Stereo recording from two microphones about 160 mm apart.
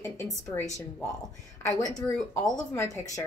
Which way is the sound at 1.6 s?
20° left (ahead or behind).